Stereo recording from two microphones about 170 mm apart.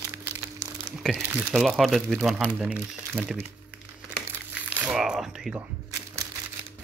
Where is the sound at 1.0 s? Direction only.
Centre (ahead or behind).